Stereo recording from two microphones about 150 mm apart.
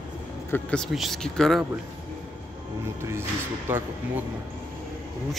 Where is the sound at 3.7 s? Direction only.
15° right (ahead or behind).